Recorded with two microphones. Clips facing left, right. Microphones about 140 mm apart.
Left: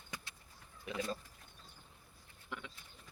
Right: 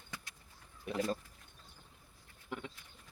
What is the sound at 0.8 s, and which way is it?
Speech, 45° right (ahead or behind).